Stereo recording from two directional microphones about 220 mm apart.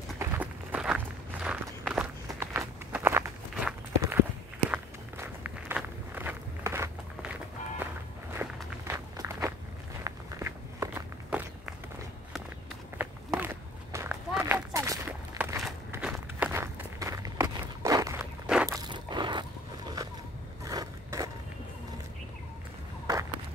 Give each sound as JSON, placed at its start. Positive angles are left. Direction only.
{"t": 0.2, "sound": "walk", "side_deg": -10}
{"t": 8.4, "sound": "walk", "side_deg": -10}
{"t": 12.9, "sound": "walk", "side_deg": -10}
{"t": 18.7, "sound": "biting", "side_deg": -20}
{"t": 20.0, "sound": "a sound", "side_deg": -15}
{"t": 20.6, "sound": "scrape", "side_deg": -15}